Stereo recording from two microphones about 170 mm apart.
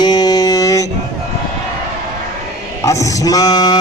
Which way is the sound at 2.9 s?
20° left (ahead or behind).